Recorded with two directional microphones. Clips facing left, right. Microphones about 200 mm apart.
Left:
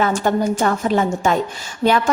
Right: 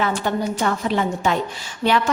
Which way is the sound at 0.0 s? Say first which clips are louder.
Left 4 dB; 45° left (ahead or behind).